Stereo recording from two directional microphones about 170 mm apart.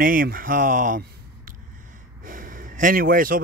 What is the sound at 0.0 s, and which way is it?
A man's voice, 55° right (ahead or behind).